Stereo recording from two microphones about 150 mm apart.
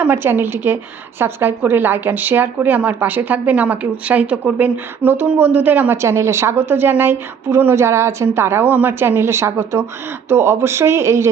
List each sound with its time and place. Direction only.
0.0 s a woman's voice: 15° right (ahead or behind)